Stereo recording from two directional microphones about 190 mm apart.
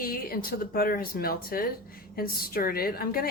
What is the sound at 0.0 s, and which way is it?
Speech, 50° left (ahead or behind).